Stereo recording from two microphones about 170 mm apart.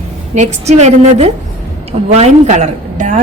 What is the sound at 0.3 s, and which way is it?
A woman's voice, 40° right (ahead or behind).